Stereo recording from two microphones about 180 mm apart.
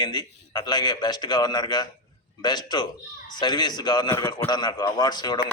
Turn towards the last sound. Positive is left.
turn(degrees=25)  # may be behind; listen again after turning